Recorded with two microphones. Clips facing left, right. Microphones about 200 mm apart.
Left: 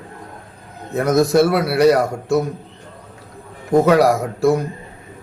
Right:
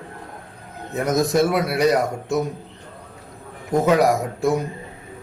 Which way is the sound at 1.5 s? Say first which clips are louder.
Left 5 dB; centre (ahead or behind).